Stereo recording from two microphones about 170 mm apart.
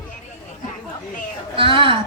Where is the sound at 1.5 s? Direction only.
30° right (ahead or behind).